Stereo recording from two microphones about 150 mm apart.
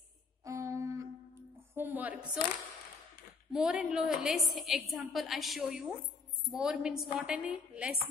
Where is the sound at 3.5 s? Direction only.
5° right (ahead or behind).